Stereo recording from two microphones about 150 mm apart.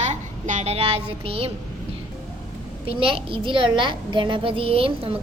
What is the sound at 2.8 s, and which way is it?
A woman's voice, 40° right (ahead or behind).